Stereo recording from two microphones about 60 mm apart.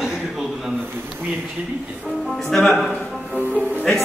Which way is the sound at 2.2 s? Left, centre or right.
Centre.